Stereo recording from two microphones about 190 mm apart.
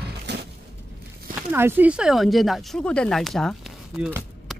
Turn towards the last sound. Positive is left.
turn(degrees=-5)  # may be behind; listen again after turning